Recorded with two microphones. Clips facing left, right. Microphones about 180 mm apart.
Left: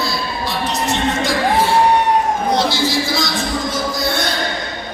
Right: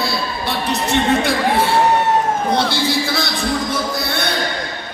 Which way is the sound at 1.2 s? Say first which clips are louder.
Even; 60° right (ahead or behind).